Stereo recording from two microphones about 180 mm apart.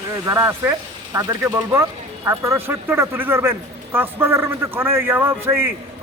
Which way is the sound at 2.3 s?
10° right (ahead or behind).